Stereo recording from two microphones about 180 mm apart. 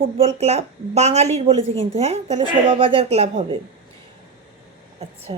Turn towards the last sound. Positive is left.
turn(degrees=-30)  # may be behind; listen again after turning